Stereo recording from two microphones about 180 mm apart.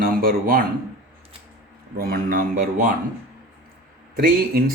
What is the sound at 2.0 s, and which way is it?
Speech, 55° right (ahead or behind).